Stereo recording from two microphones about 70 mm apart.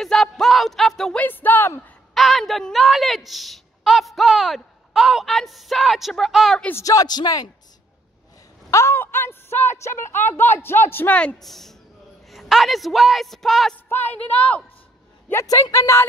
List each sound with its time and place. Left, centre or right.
0.0 s a woman's voice: centre
1.1 s speech: left
2.1 s a woman's voice: centre
6.8 s a man's voice: left
8.6 s a sound: left
8.9 s speech: left
11.1 s speech: centre
11.3 s a woman's voice: centre
15.4 s a man's voice: left